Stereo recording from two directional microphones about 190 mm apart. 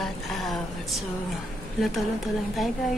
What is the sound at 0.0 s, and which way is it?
A woman's voice, centre (ahead or behind).